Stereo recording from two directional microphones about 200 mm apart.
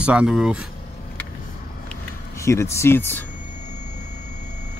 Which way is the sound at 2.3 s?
15° left (ahead or behind).